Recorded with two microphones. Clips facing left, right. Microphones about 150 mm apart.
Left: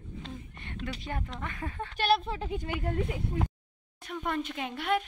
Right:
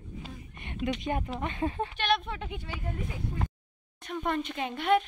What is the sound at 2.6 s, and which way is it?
Speech, 65° left (ahead or behind).